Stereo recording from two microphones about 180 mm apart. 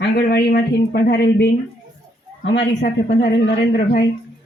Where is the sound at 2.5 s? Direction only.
70° left (ahead or behind).